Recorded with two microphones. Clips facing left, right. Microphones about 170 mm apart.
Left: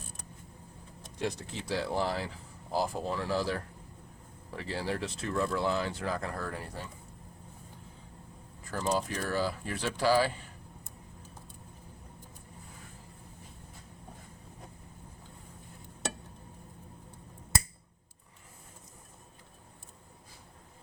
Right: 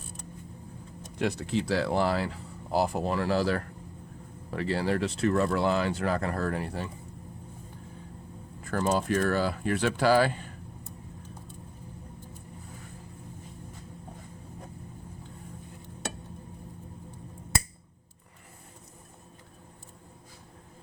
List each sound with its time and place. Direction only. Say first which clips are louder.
1.2 s speech: right 7 dB; 70° right (ahead or behind)
8.6 s speech: right 4 dB; 60° right (ahead or behind)